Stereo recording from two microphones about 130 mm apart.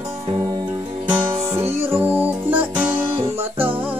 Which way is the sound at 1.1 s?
20° right (ahead or behind).